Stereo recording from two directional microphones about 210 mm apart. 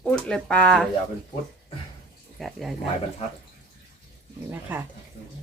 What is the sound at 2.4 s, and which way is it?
Speech, centre (ahead or behind).